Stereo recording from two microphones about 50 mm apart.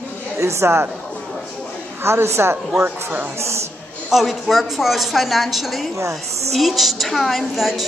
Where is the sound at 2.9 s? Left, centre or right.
Right.